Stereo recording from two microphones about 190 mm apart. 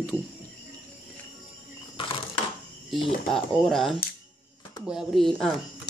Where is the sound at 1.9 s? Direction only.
25° left (ahead or behind).